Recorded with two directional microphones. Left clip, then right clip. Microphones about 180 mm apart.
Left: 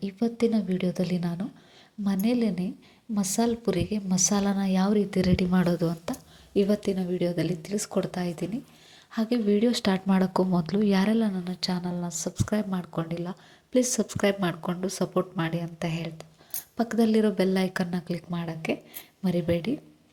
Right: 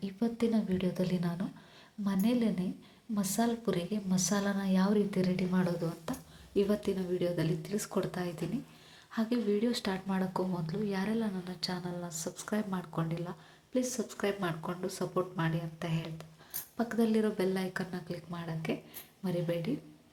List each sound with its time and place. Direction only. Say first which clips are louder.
0.0 s a woman's voice: left 7 dB; 25° left (ahead or behind)
13.7 s a woman's voice: left 9 dB; 45° left (ahead or behind)